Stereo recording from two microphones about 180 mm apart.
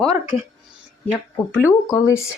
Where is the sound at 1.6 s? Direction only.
20° left (ahead or behind).